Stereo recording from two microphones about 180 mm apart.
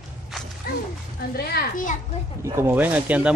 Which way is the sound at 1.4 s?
60° left (ahead or behind).